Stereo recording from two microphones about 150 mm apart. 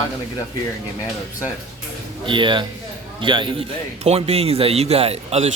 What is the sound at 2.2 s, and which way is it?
Speech, 35° right (ahead or behind).